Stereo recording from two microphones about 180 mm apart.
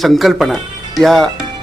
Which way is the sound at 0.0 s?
Centre (ahead or behind).